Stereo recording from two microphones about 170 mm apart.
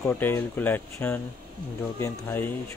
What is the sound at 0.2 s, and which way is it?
Speech, 10° left (ahead or behind).